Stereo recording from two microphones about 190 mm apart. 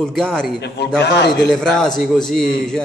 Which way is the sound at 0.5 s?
65° left (ahead or behind).